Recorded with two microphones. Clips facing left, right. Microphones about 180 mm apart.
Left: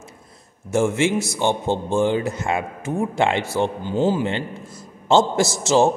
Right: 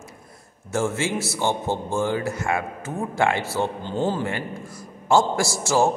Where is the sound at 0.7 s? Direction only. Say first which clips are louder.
Left 5 dB; 15° left (ahead or behind).